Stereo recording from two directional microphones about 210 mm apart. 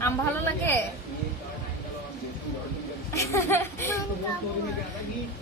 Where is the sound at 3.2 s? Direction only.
10° left (ahead or behind).